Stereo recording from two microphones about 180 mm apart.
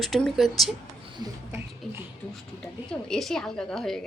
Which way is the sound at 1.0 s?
25° right (ahead or behind).